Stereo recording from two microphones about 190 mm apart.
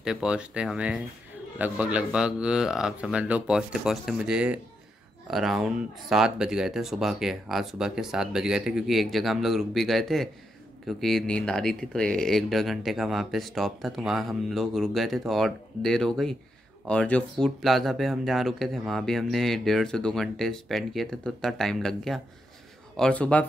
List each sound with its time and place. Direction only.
0.0 s speech: 5° right (ahead or behind)